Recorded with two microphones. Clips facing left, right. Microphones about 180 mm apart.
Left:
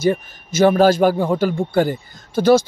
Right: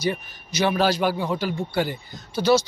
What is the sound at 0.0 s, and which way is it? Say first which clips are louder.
Speech: left 8 dB; 50° left (ahead or behind).